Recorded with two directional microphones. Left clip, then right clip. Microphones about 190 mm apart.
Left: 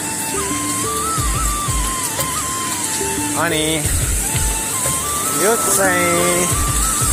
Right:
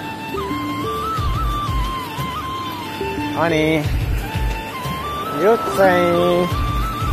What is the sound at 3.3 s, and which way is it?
Speech, 5° right (ahead or behind).